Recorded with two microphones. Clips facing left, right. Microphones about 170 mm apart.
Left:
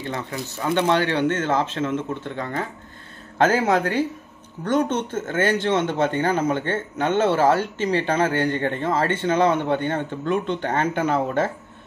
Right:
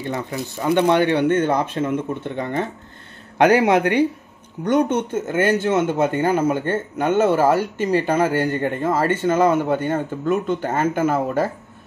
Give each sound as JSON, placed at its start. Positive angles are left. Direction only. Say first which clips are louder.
{"t": 0.0, "sound": "speech", "louder": "right 3 dB", "side_deg": -15}